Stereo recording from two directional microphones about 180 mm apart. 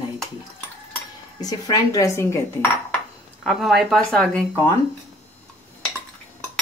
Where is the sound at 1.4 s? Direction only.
20° left (ahead or behind).